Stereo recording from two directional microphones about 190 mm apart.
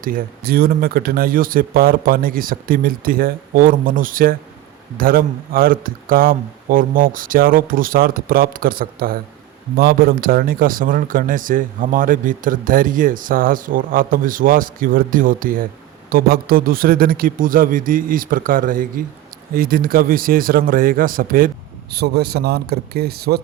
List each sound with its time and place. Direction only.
0.0 s speech: 50° right (ahead or behind)
21.9 s speech: 60° right (ahead or behind)